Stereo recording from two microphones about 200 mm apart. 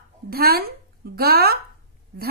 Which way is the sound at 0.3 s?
50° right (ahead or behind).